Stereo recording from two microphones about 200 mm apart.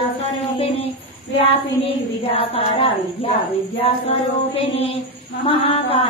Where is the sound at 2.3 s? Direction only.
30° left (ahead or behind).